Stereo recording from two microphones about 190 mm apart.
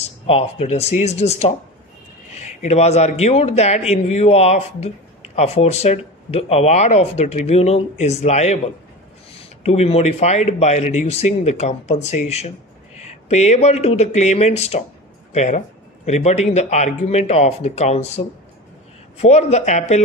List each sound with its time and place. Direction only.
0.0 s speech: 30° left (ahead or behind)